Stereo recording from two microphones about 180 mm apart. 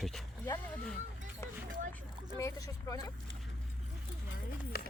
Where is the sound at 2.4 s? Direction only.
15° left (ahead or behind).